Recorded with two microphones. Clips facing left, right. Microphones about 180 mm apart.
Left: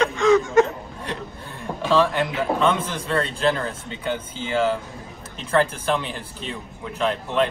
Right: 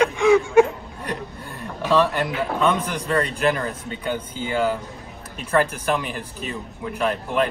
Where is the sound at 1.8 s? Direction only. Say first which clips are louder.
Even; 10° right (ahead or behind).